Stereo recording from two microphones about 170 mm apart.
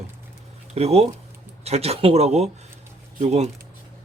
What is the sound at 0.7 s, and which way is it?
A man's voice, 40° right (ahead or behind).